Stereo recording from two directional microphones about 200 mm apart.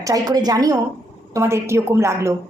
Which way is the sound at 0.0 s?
20° right (ahead or behind).